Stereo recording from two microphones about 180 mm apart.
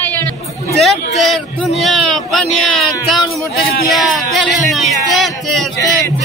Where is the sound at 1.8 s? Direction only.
Centre (ahead or behind).